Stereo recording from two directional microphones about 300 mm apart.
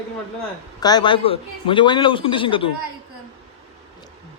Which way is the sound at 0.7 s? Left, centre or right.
Centre.